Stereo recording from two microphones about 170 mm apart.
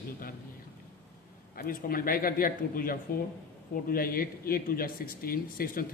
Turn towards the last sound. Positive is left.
turn(degrees=60)  # may be behind; listen again after turning